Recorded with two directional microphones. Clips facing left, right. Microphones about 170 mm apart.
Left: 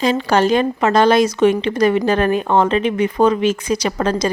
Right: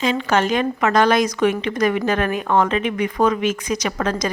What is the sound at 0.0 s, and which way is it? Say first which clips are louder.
A woman's voice: left 4 dB; 35° left (ahead or behind).